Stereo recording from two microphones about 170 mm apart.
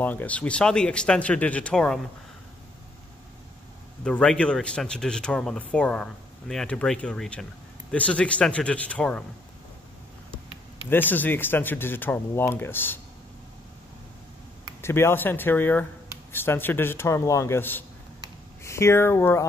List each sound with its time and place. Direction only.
0.0 s speech: 10° left (ahead or behind)
4.0 s speech: 5° left (ahead or behind)
10.9 s speech: 10° left (ahead or behind)
14.8 s speech: 15° left (ahead or behind)